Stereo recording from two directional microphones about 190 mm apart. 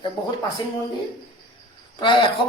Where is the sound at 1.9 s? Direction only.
25° left (ahead or behind).